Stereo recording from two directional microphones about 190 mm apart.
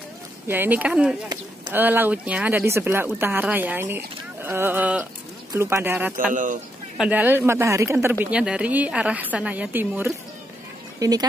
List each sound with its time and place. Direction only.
0.5 s a woman's voice: 10° right (ahead or behind)
6.3 s speech: 45° right (ahead or behind)
7.0 s a woman's voice: 10° right (ahead or behind)
11.0 s speech: 20° right (ahead or behind)